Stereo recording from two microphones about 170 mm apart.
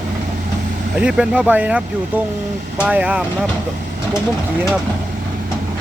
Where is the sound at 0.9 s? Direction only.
5° right (ahead or behind).